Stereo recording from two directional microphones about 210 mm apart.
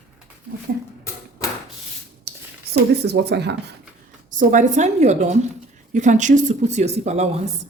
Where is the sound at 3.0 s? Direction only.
50° right (ahead or behind).